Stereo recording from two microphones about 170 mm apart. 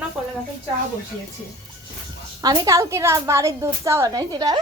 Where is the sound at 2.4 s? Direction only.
20° right (ahead or behind).